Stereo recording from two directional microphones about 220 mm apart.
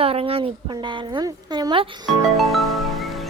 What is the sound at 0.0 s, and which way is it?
Speech, 25° right (ahead or behind).